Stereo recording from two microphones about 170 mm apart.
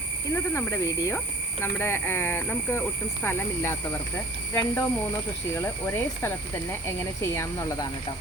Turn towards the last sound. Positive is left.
turn(degrees=20)  # may be behind; listen again after turning